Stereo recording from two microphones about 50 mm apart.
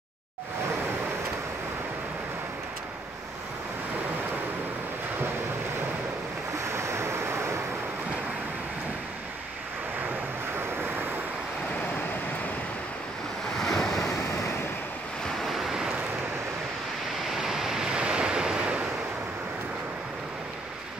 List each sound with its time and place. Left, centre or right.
6.5 s waves: right
13.6 s waves: centre
15.2 s waves: centre
17.3 s waves: centre